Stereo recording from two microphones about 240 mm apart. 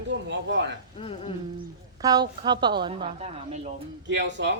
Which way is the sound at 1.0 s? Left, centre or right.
Left.